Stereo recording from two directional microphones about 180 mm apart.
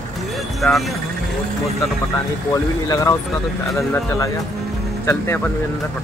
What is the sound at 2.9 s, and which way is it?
Speech, 20° left (ahead or behind).